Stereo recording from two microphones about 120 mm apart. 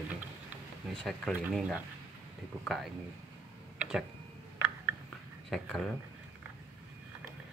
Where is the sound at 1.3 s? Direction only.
10° right (ahead or behind).